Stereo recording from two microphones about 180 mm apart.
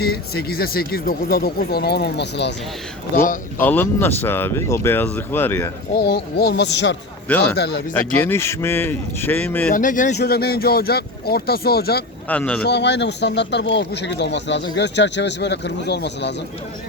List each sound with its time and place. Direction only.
0.0 s speech: 60° left (ahead or behind)
3.6 s speech: 10° left (ahead or behind)
5.9 s speech: 65° left (ahead or behind)
7.9 s speech: 10° left (ahead or behind)
9.7 s speech: 45° left (ahead or behind)
10.2 s speech: 60° left (ahead or behind)
12.3 s speech: 10° left (ahead or behind)
12.6 s speech: 70° left (ahead or behind)